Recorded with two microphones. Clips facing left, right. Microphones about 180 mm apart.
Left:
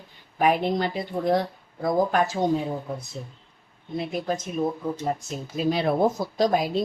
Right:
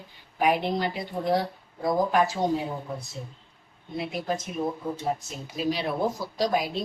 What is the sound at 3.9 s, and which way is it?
Speech, 45° left (ahead or behind).